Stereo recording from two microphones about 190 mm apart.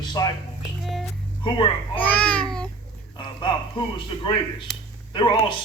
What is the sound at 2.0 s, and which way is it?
Speech, 5° left (ahead or behind).